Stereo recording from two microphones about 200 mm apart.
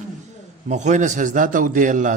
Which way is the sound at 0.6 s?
35° right (ahead or behind).